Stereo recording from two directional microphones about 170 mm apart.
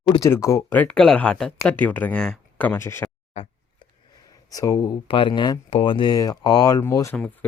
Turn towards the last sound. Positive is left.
turn(degrees=15)  # may be behind; listen again after turning